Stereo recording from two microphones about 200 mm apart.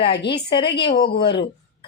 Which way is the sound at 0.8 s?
50° left (ahead or behind).